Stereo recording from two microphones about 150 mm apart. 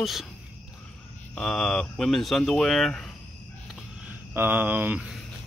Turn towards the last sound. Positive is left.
turn(degrees=-5)  # may be behind; listen again after turning